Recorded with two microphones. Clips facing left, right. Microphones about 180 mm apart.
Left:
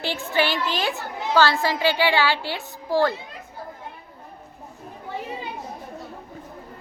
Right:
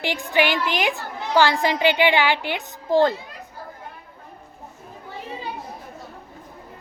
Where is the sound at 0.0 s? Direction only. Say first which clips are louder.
Right 2 dB; 15° right (ahead or behind).